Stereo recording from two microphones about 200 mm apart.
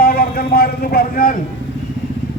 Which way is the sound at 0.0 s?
50° left (ahead or behind).